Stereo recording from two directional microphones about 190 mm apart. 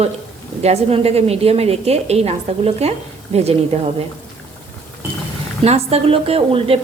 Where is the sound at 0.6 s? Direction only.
35° right (ahead or behind).